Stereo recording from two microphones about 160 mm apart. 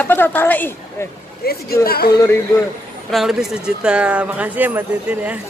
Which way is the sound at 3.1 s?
Centre (ahead or behind).